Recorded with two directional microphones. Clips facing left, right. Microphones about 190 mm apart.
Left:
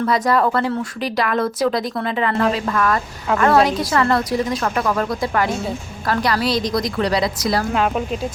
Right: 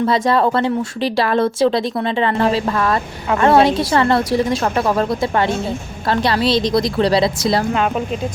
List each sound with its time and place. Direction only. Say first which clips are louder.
0.0 s speech: right 2 dB; 25° right (ahead or behind)
7.7 s speech: right 1 dB; centre (ahead or behind)